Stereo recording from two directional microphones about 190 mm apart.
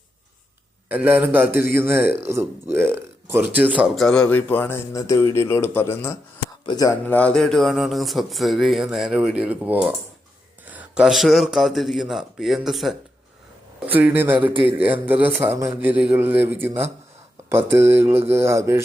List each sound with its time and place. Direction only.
0.9 s a man's voice: 10° right (ahead or behind); by 6.9 s 20° left (ahead or behind)
7.1 s a man's voice: 5° left (ahead or behind); by 18.8 s 15° right (ahead or behind)